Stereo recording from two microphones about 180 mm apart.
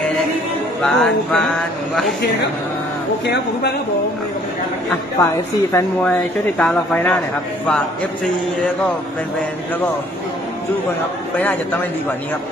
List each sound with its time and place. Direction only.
0.8 s music: 5° left (ahead or behind)
5.2 s a woman's voice: 15° left (ahead or behind)
6.6 s music: 5° left (ahead or behind)